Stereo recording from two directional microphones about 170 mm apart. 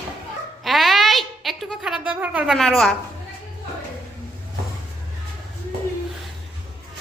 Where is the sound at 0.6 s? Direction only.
Centre (ahead or behind).